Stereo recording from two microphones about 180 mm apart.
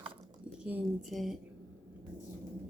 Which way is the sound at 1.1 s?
Centre (ahead or behind).